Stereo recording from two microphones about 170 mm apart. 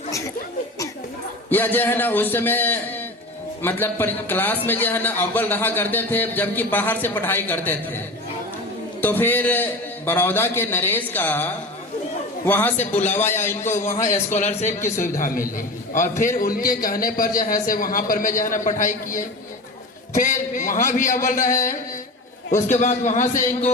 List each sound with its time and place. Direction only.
1.5 s a man's voice: 10° left (ahead or behind)
9.0 s a man's voice: 10° left (ahead or behind)
14.0 s a man's voice: 45° left (ahead or behind)
15.9 s a man's voice: 50° left (ahead or behind)